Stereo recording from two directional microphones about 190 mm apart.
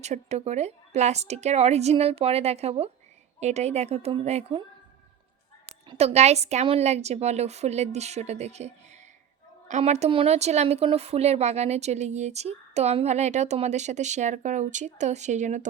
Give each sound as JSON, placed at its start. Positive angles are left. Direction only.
{"t": 0.0, "sound": "speech", "side_deg": -35}
{"t": 5.6, "sound": "speech", "side_deg": -30}